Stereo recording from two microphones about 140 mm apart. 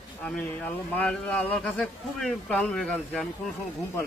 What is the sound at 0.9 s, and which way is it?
Speech, 10° left (ahead or behind).